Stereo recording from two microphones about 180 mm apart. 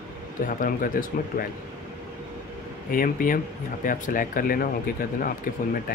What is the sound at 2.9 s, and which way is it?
Speech, 50° left (ahead or behind).